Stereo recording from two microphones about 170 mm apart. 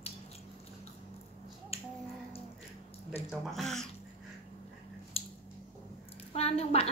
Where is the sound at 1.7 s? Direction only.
35° left (ahead or behind).